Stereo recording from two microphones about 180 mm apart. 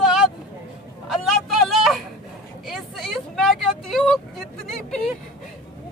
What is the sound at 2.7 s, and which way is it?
A man's voice, centre (ahead or behind).